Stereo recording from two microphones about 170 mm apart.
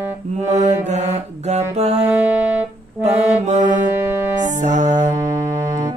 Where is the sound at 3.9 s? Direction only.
15° right (ahead or behind).